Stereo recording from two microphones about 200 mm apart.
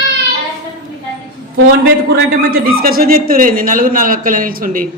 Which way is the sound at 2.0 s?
50° right (ahead or behind).